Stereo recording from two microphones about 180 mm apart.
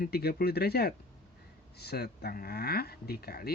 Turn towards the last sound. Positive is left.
turn(degrees=60)  # may be behind; listen again after turning